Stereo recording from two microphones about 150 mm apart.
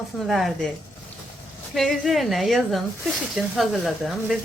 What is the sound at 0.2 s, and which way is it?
Speech, centre (ahead or behind).